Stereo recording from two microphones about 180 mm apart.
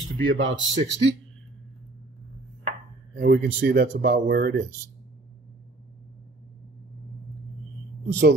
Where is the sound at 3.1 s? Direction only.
60° right (ahead or behind).